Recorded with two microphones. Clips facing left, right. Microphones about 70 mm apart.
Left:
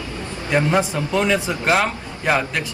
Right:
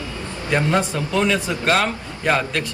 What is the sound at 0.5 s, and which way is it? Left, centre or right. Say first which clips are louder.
Speech: left 1 dB; centre.